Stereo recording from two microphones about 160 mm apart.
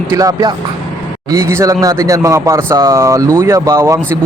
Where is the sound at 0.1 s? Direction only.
20° right (ahead or behind).